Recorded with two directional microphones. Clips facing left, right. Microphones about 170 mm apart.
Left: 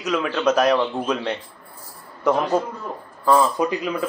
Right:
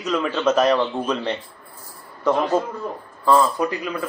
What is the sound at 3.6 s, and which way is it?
Speech, 20° left (ahead or behind).